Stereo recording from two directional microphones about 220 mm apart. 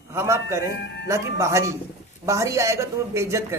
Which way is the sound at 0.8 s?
50° left (ahead or behind).